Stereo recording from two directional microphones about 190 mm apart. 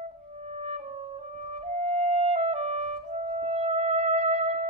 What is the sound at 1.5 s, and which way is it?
Clarinet, 35° right (ahead or behind).